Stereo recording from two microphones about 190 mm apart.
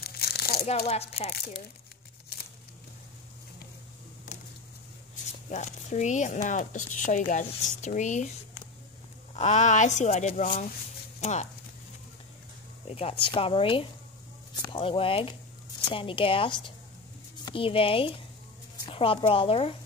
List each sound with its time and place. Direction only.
0.0 s crumpling: 55° left (ahead or behind)
0.8 s speech: 35° left (ahead or behind)
1.3 s speech: 55° left (ahead or behind)
4.3 s a sound: 45° left (ahead or behind)
5.1 s speech: 40° left (ahead or behind)
9.3 s speech: 35° left (ahead or behind)
12.8 s speech: 30° left (ahead or behind)